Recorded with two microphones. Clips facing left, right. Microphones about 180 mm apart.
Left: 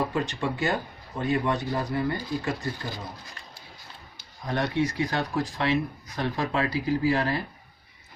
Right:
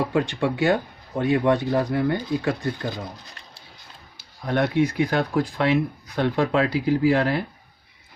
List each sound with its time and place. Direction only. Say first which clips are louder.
0.3 s speech: right 6 dB; 70° right (ahead or behind)
4.4 s speech: right 5 dB; 65° right (ahead or behind)